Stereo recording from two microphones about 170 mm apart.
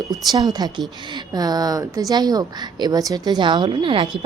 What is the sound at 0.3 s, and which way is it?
Speech, 20° right (ahead or behind).